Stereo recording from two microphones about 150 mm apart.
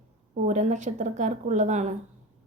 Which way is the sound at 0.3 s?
50° right (ahead or behind).